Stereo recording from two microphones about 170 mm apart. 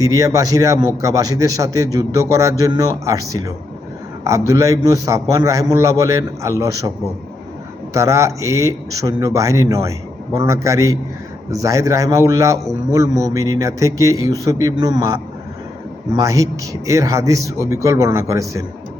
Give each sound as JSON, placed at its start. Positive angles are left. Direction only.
{"t": 0.0, "sound": "a man's voice", "side_deg": -20}
{"t": 7.9, "sound": "a man's voice", "side_deg": -20}